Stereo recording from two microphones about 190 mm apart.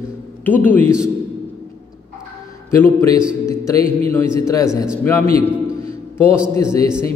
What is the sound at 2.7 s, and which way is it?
Speech, 15° left (ahead or behind).